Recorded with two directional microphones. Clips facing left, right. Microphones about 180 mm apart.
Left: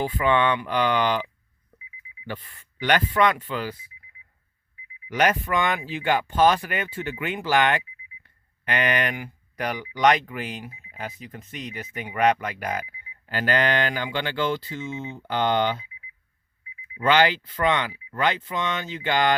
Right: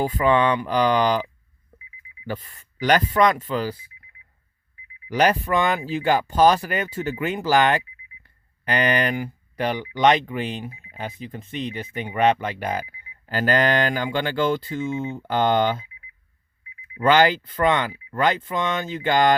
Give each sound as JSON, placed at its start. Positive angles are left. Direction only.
{"t": 0.0, "sound": "speech", "side_deg": -40}
{"t": 5.0, "sound": "speech", "side_deg": -35}
{"t": 17.0, "sound": "speech", "side_deg": -45}